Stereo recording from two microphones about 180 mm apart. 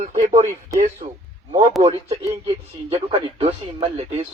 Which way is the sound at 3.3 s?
30° right (ahead or behind).